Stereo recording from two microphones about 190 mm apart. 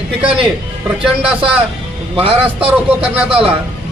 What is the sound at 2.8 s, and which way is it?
Speech, 10° right (ahead or behind).